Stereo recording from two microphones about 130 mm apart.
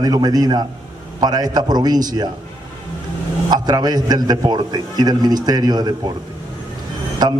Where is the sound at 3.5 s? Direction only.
30° right (ahead or behind).